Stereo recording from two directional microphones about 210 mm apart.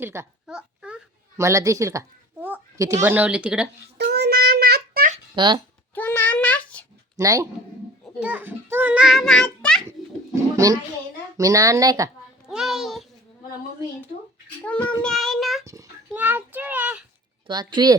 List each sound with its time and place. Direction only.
0.0 s a woman's voice: 10° right (ahead or behind)
3.9 s child singing: 50° right (ahead or behind)
5.1 s babbling: 20° right (ahead or behind)
5.9 s a sound: 10° left (ahead or behind)
7.2 s a child's voice: 15° right (ahead or behind); by 9.8 s 5° left (ahead or behind)
11.3 s speech: 15° right (ahead or behind)
12.5 s child singing: centre (ahead or behind)
14.6 s speech: 5° left (ahead or behind)
15.0 s child singing: centre (ahead or behind)
15.6 s speech: 15° right (ahead or behind)
17.4 s speech: 20° right (ahead or behind)